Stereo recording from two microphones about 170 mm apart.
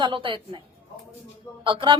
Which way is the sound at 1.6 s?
30° right (ahead or behind).